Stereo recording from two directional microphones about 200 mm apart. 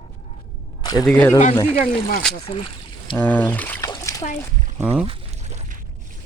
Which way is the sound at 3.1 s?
10° left (ahead or behind).